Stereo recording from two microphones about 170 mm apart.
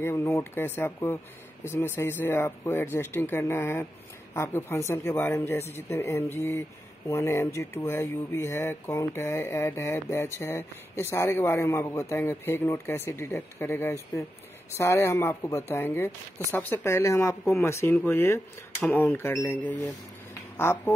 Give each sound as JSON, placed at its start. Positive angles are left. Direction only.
{"t": 0.0, "sound": "speech", "side_deg": 15}